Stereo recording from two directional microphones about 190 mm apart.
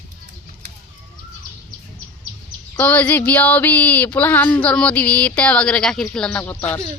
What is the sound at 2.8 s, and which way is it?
Speech, 10° left (ahead or behind).